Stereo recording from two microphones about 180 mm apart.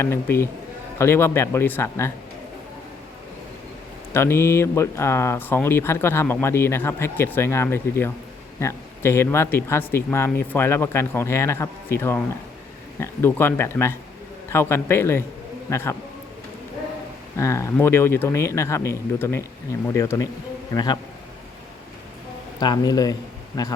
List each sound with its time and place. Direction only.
0.0 s speech: 15° left (ahead or behind)
4.1 s speech: 15° left (ahead or behind)
17.3 s a man's voice: 15° left (ahead or behind)
22.6 s a man's voice: 25° left (ahead or behind)